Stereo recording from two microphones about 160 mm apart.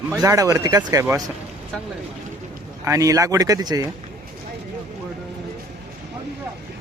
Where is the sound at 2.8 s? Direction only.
20° right (ahead or behind).